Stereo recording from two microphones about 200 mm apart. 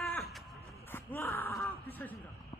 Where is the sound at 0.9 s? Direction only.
10° left (ahead or behind).